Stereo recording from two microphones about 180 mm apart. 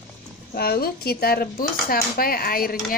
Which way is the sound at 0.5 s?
60° left (ahead or behind).